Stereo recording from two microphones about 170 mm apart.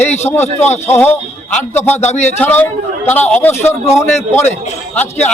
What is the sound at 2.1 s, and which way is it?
Speech, 40° left (ahead or behind).